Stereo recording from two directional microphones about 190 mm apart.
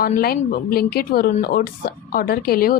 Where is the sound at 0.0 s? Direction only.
55° left (ahead or behind).